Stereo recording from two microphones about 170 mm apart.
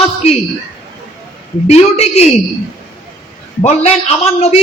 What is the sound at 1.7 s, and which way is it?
Speech, 40° left (ahead or behind).